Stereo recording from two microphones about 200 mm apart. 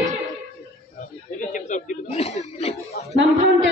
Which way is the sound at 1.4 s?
40° left (ahead or behind).